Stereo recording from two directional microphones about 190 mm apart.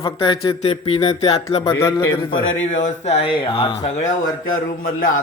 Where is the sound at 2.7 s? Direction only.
35° left (ahead or behind).